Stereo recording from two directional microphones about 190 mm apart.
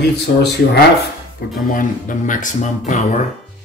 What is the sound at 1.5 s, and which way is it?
Speech, 45° left (ahead or behind).